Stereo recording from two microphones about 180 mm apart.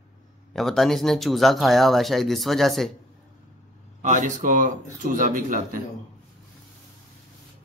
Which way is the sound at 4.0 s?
45° right (ahead or behind).